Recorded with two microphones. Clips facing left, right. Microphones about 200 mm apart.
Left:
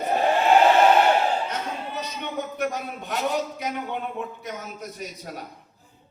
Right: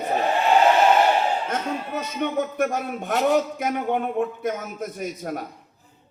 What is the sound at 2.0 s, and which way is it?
A man's voice, 50° right (ahead or behind).